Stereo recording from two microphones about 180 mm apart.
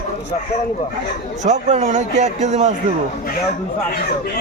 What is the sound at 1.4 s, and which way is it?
A man's voice, 40° right (ahead or behind).